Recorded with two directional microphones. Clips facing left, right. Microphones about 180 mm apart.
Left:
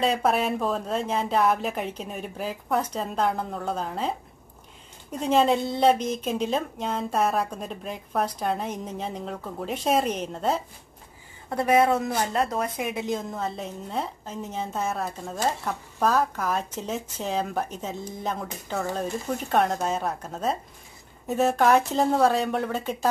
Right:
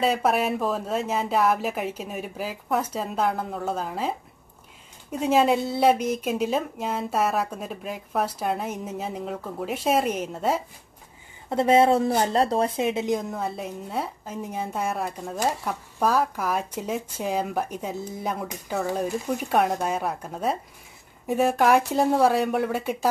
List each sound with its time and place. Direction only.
0.0 s speech: 5° right (ahead or behind)
5.1 s a woman's voice: 5° right (ahead or behind)
11.4 s a woman's voice: 25° right (ahead or behind)